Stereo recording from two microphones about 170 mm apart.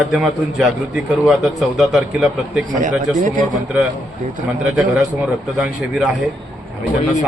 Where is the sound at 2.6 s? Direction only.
50° right (ahead or behind).